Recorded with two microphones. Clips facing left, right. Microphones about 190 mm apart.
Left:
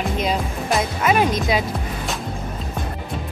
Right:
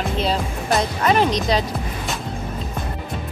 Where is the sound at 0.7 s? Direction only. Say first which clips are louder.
Right 1 dB; 10° left (ahead or behind).